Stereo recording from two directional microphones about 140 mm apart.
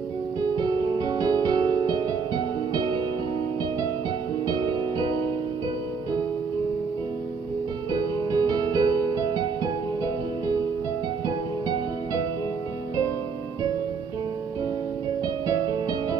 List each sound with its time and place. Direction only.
0.6 s music: 30° right (ahead or behind)
4.5 s music: 30° right (ahead or behind)
7.9 s music: 30° right (ahead or behind)
15.4 s music: 25° right (ahead or behind)